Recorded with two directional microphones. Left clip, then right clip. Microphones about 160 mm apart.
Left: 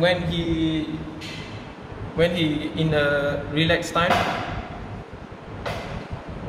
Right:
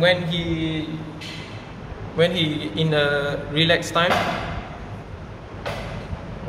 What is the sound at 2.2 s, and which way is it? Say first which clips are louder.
A man's voice: right 1 dB; 40° right (ahead or behind).